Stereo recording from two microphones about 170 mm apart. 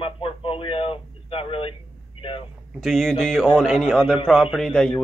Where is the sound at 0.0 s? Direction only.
35° left (ahead or behind).